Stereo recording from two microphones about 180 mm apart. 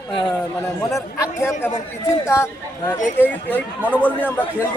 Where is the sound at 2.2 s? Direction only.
15° left (ahead or behind).